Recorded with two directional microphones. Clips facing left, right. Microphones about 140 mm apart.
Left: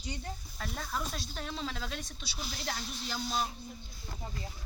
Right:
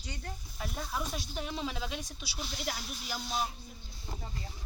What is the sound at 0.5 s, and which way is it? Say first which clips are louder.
Speech: right 1 dB; 10° right (ahead or behind).